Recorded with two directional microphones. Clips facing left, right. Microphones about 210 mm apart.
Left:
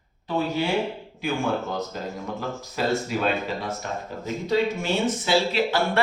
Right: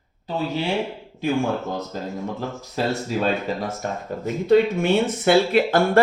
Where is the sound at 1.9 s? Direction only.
30° right (ahead or behind).